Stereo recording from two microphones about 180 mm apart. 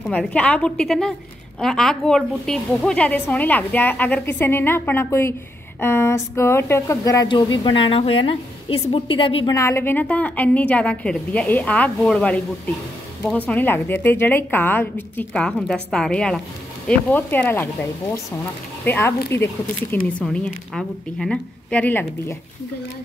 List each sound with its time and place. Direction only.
0.0 s a woman's voice: 5° left (ahead or behind); by 9.6 s 30° left (ahead or behind)
9.6 s a woman's voice: 15° left (ahead or behind)
13.5 s a woman's voice: 10° left (ahead or behind)
18.9 s a woman's voice: 10° left (ahead or behind)